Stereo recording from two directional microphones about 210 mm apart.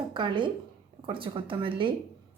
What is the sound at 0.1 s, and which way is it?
A woman's voice, 20° right (ahead or behind).